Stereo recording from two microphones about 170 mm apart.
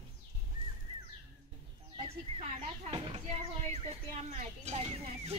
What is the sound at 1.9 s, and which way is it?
Speech, 35° right (ahead or behind).